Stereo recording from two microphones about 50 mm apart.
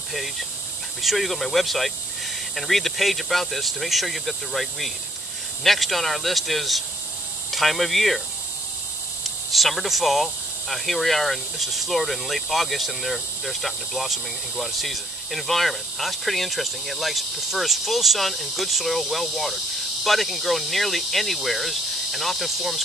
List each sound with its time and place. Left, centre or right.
1.0 s speech: centre
9.5 s speech: centre